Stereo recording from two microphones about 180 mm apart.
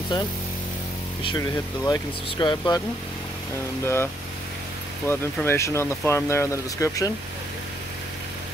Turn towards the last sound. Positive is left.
turn(degrees=15)  # may be behind; listen again after turning